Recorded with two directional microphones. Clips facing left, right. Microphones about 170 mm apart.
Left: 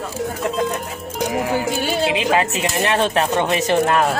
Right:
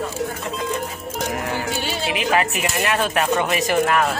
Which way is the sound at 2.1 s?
20° left (ahead or behind).